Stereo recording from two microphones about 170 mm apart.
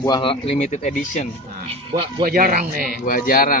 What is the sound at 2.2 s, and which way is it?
Speech, 55° right (ahead or behind).